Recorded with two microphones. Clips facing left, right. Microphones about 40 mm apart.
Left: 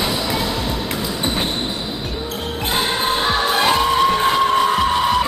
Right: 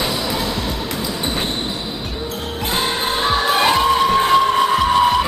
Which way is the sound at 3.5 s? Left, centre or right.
Centre.